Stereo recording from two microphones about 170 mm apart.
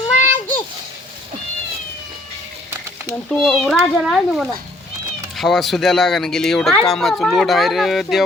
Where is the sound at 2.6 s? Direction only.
15° right (ahead or behind).